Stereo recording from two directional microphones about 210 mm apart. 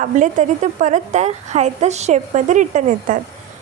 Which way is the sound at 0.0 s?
35° right (ahead or behind).